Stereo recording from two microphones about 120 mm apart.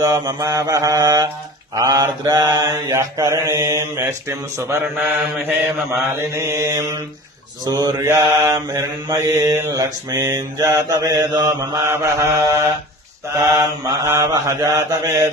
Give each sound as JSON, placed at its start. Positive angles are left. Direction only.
{"t": 0.0, "sound": "mantra", "side_deg": -30}
{"t": 4.9, "sound": "mantra", "side_deg": -15}
{"t": 11.9, "sound": "mantra", "side_deg": -25}